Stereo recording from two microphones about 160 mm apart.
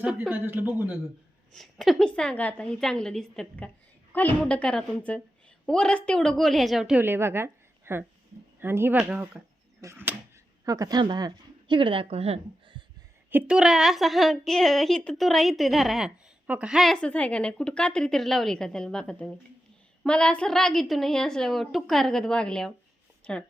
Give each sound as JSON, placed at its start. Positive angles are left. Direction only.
{"t": 0.0, "sound": "a man's voice", "side_deg": -10}
{"t": 1.5, "sound": "a woman's voice", "side_deg": 0}
{"t": 13.3, "sound": "a woman's voice", "side_deg": -5}